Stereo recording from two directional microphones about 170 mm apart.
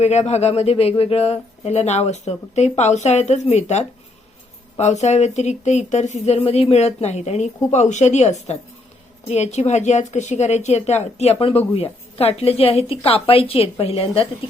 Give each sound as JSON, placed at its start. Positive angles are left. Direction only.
{"t": 0.0, "sound": "speech", "side_deg": 40}